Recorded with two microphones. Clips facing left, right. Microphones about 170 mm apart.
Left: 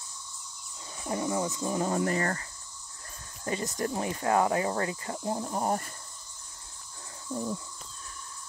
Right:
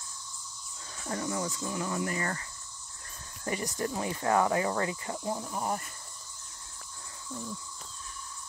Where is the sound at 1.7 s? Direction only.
35° left (ahead or behind).